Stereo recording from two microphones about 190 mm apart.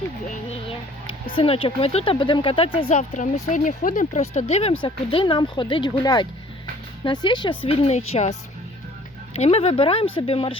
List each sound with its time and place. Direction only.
0.7 s speech: 25° left (ahead or behind)
3.0 s speech: 40° left (ahead or behind)